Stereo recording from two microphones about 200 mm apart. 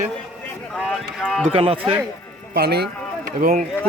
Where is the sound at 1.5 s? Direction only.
30° right (ahead or behind).